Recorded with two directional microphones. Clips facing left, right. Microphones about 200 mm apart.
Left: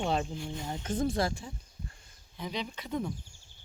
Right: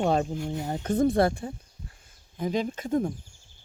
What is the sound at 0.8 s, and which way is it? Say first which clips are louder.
Speech: right 8 dB; 60° right (ahead or behind).